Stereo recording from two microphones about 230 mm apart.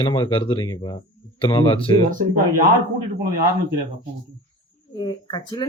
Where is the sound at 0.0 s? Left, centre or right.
Left.